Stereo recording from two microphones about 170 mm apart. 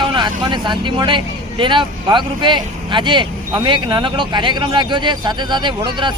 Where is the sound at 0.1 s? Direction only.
25° right (ahead or behind).